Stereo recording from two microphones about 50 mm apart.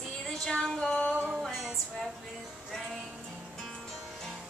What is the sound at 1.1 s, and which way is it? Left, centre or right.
Music, centre.